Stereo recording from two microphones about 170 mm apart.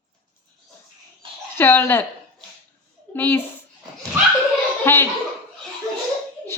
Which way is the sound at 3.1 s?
10° left (ahead or behind).